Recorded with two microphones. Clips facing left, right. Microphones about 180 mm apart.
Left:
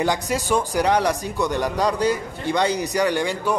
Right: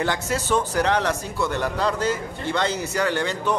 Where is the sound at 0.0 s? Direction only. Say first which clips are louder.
Left 2 dB; 15° left (ahead or behind).